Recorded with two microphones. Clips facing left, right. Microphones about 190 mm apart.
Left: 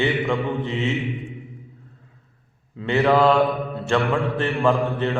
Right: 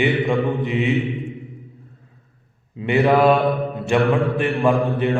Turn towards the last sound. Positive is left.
turn(degrees=-15)  # may be behind; listen again after turning